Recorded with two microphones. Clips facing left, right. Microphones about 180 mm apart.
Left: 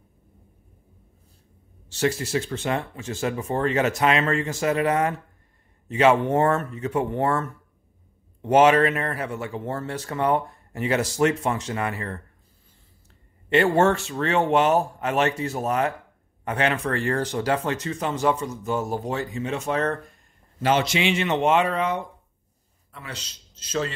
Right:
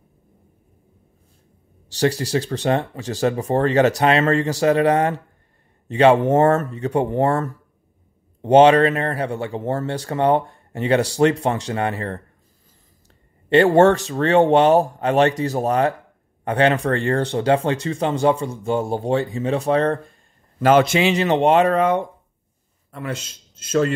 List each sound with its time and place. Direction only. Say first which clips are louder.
1.9 s speech: right 4 dB; 35° right (ahead or behind)
13.5 s speech: right 6 dB; 35° right (ahead or behind)
20.5 s speech: right 7 dB; 50° right (ahead or behind)